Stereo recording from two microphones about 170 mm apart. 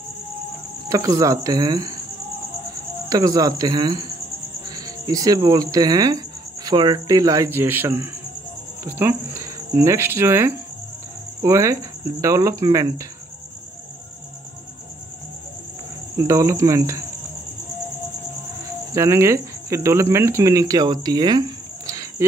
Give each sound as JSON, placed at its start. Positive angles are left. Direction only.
{"t": 0.8, "sound": "speech", "side_deg": -20}
{"t": 3.1, "sound": "speech", "side_deg": -20}
{"t": 16.2, "sound": "speech", "side_deg": -15}
{"t": 18.9, "sound": "speech", "side_deg": -15}